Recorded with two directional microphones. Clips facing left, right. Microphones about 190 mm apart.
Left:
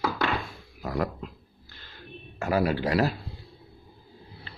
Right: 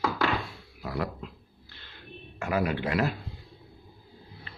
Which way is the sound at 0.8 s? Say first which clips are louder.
Left 3 dB; 45° left (ahead or behind).